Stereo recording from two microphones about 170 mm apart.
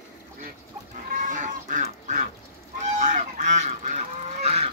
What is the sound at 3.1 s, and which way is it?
Goose, 45° right (ahead or behind).